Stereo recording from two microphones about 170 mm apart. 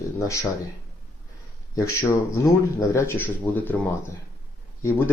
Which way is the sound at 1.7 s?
20° left (ahead or behind).